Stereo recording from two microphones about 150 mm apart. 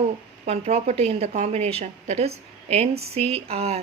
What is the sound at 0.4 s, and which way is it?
A woman's voice, 45° right (ahead or behind).